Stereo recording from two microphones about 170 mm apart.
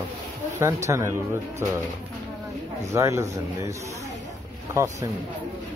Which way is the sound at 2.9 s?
20° right (ahead or behind).